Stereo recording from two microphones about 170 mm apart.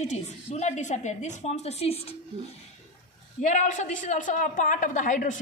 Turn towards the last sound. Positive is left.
turn(degrees=45)  # may be behind; listen again after turning